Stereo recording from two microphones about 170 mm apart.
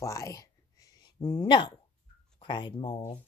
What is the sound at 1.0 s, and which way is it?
Speech, 30° left (ahead or behind).